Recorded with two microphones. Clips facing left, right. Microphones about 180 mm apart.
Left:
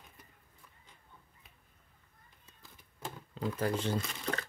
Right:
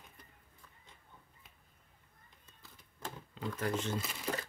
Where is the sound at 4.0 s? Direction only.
5° right (ahead or behind).